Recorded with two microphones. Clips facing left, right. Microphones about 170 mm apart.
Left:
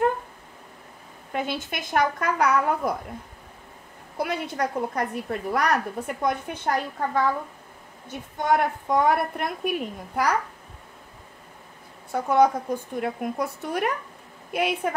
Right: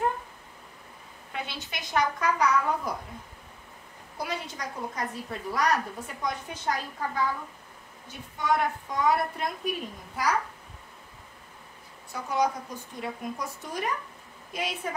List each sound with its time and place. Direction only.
1.3 s speech: 50° left (ahead or behind)
4.2 s a woman's voice: 60° left (ahead or behind)
12.1 s a woman's voice: 55° left (ahead or behind)